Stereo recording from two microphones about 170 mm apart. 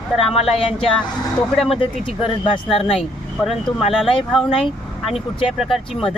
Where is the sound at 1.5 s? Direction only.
Centre (ahead or behind).